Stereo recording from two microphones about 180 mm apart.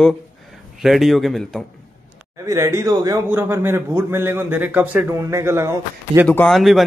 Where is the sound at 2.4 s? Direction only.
15° right (ahead or behind).